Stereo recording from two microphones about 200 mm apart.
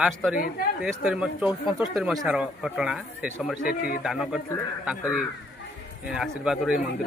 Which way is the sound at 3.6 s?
45° left (ahead or behind).